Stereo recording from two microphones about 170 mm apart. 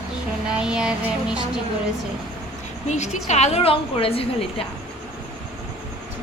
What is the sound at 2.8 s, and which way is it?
A woman's voice, 45° left (ahead or behind).